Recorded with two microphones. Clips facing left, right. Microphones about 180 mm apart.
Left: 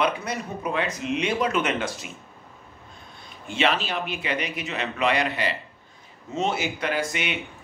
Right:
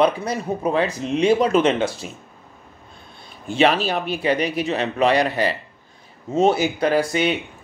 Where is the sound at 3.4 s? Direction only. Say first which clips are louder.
Right 6 dB; 40° right (ahead or behind).